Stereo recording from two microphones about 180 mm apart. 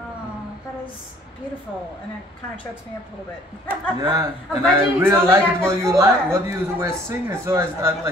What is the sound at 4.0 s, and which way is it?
A man's voice, 20° right (ahead or behind).